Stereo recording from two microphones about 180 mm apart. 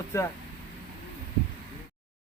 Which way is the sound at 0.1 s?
15° left (ahead or behind).